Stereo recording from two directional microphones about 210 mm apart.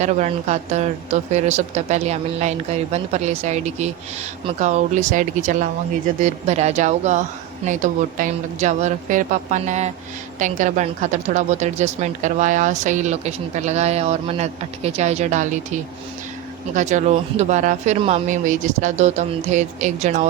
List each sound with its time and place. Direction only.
0.0 s speech: 35° right (ahead or behind)